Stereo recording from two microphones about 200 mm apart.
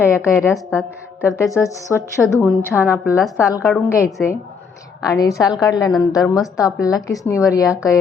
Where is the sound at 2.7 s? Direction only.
5° right (ahead or behind).